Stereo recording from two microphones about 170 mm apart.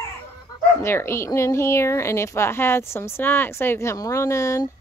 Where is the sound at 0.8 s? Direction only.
15° left (ahead or behind).